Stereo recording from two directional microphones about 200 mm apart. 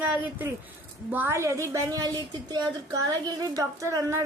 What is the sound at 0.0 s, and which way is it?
A woman's voice, 10° right (ahead or behind).